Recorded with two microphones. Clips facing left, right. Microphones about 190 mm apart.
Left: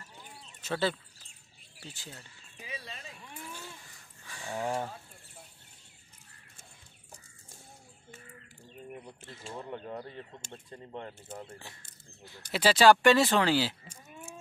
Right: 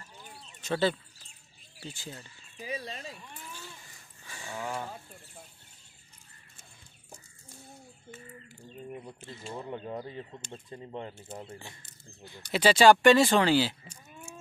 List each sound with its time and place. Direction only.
0.6 s speech: 5° left (ahead or behind)
2.6 s speech: 35° right (ahead or behind)
4.3 s speech: centre (ahead or behind)
4.6 s speech: 35° left (ahead or behind)
8.5 s bird: centre (ahead or behind)
9.2 s speech: centre (ahead or behind)
12.3 s speech: centre (ahead or behind)